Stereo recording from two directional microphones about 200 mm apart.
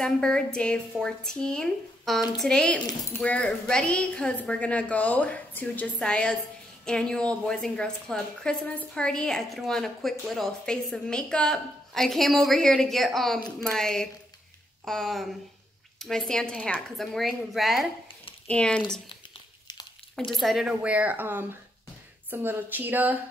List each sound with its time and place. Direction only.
0.0 s a woman's voice: 5° left (ahead or behind)
19.7 s a sound: 20° left (ahead or behind)
20.2 s speech: centre (ahead or behind)